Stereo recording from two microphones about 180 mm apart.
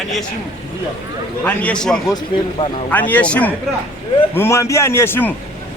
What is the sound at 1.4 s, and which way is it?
A man's voice, 5° left (ahead or behind).